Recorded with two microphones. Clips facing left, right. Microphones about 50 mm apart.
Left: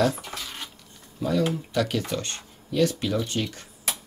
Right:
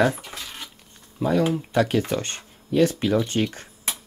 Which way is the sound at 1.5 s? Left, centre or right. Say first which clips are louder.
Right 5 dB; right.